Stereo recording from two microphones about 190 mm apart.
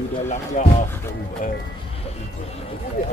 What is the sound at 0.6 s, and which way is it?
Speech, 45° left (ahead or behind).